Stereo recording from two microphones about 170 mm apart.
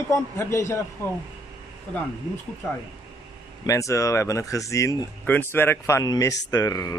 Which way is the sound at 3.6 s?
20° left (ahead or behind).